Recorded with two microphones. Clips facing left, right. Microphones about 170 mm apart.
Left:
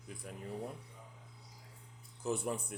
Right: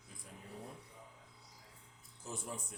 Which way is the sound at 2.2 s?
65° left (ahead or behind).